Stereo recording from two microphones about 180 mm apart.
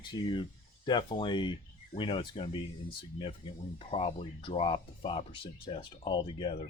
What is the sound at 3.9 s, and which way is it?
Speech, 30° left (ahead or behind).